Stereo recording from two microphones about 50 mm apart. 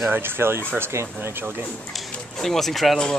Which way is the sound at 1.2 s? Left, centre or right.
Right.